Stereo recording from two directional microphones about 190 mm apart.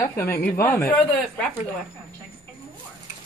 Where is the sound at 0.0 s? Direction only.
15° left (ahead or behind).